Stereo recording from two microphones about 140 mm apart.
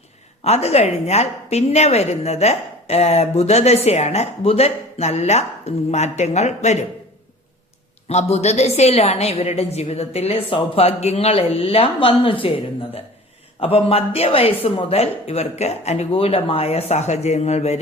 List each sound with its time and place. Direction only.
0.4 s a woman's voice: 50° left (ahead or behind)
8.0 s a woman's voice: 50° left (ahead or behind)
13.6 s a woman's voice: 45° left (ahead or behind)